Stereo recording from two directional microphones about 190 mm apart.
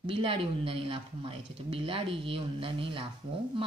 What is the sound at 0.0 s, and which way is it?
A woman's voice, 30° right (ahead or behind).